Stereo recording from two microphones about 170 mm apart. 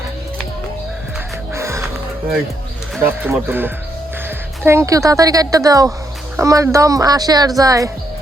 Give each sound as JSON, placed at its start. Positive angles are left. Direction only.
{"t": 1.5, "sound": "music", "side_deg": -15}
{"t": 3.0, "sound": "speech", "side_deg": -10}